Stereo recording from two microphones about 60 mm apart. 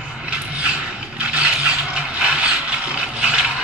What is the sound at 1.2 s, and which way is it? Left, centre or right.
Vehicle, right.